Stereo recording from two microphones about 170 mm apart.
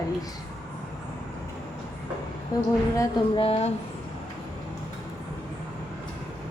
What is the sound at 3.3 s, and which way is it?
Speech, 35° left (ahead or behind).